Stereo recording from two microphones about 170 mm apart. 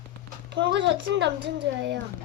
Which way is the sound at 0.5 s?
90° right.